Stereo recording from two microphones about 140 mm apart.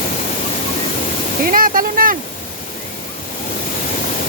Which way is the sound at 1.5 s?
85° right.